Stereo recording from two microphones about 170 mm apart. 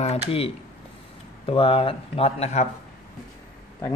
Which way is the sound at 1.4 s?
30° left (ahead or behind).